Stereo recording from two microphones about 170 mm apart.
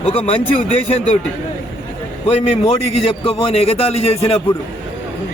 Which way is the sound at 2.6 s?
35° left (ahead or behind).